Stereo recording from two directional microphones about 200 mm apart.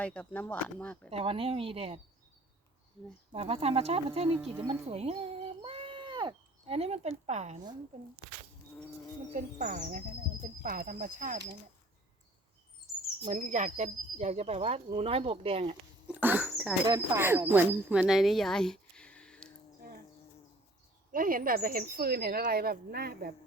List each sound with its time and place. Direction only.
0.0 s speech: 5° left (ahead or behind)
1.1 s speech: 30° right (ahead or behind)
3.3 s speech: 30° right (ahead or behind)
9.3 s speech: 40° right (ahead or behind)
13.2 s speech: 40° right (ahead or behind)
16.0 s speech: 10° right (ahead or behind)
18.0 s a sound: centre (ahead or behind)
21.1 s speech: 45° right (ahead or behind)